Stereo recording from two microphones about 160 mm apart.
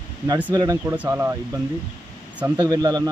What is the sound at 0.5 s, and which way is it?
Speech, 20° right (ahead or behind).